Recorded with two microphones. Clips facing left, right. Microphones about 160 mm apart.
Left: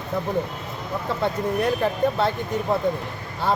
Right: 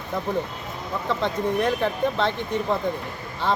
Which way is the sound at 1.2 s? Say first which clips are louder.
Left 1 dB; 10° left (ahead or behind).